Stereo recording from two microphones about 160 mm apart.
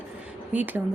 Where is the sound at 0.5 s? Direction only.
10° right (ahead or behind).